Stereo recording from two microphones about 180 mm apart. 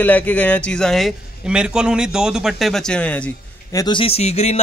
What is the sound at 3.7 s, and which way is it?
Speech, 25° left (ahead or behind).